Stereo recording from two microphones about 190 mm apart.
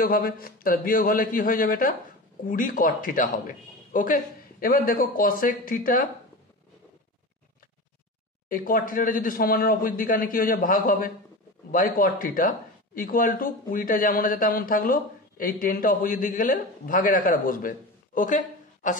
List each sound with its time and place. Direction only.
0.0 s speech: 50° left (ahead or behind)
8.5 s speech: 45° left (ahead or behind)